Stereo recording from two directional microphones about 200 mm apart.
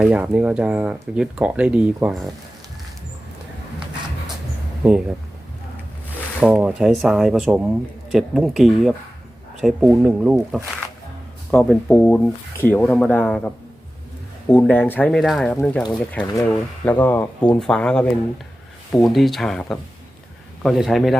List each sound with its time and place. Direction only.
0.0 s speech: 5° right (ahead or behind)
4.8 s speech: 5° right (ahead or behind)
6.4 s speech: 5° right (ahead or behind)
14.5 s speech: 10° left (ahead or behind)
19.1 s speech: centre (ahead or behind)